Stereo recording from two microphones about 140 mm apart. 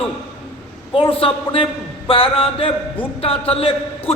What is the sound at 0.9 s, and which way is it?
A man's voice, 40° left (ahead or behind).